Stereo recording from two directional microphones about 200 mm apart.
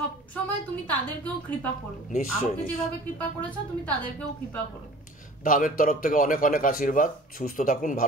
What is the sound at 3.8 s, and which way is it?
Speech, 5° left (ahead or behind).